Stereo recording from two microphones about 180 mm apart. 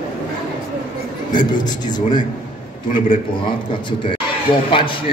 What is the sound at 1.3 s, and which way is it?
A man's voice, 25° left (ahead or behind).